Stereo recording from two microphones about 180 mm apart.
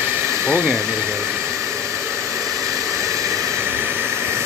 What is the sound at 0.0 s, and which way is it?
Hair dryer, 15° right (ahead or behind).